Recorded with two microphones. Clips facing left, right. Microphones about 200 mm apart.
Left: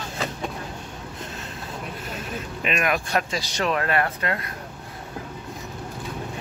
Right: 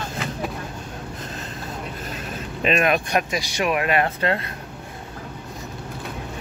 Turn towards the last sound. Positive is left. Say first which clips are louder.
# right 4 dB
turn(degrees=-25)  # may be behind; listen again after turning